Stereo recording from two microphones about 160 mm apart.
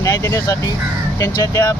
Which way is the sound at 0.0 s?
20° left (ahead or behind).